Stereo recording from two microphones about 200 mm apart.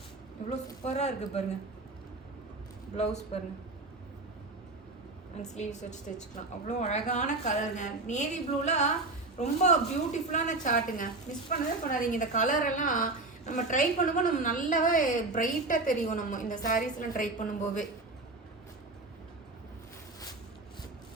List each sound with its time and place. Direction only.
0.9 s a woman's voice: 35° left (ahead or behind)
2.9 s a woman's voice: 35° left (ahead or behind)
5.5 s a woman's voice: 35° left (ahead or behind)